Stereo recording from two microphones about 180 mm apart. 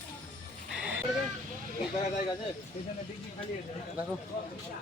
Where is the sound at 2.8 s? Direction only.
35° left (ahead or behind).